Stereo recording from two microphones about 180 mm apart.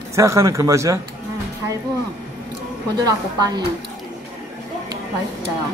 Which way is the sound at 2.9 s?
20° right (ahead or behind).